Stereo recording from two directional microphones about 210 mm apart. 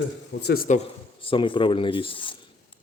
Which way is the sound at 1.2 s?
25° left (ahead or behind).